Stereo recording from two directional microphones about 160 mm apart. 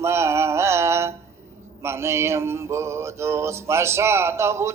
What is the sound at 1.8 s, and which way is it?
Mantra, 15° right (ahead or behind).